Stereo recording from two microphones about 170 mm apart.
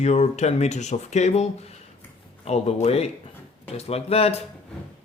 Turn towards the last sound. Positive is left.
turn(degrees=35)  # may be behind; listen again after turning